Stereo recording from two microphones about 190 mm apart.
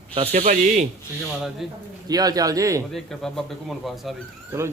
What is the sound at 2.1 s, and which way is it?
Speech, 20° right (ahead or behind).